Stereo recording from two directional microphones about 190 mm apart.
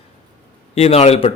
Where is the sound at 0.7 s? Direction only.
30° left (ahead or behind).